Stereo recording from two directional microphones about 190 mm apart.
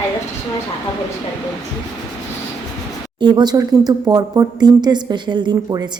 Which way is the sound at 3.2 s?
20° right (ahead or behind).